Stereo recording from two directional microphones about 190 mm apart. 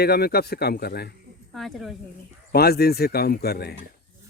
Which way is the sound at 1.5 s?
Centre (ahead or behind).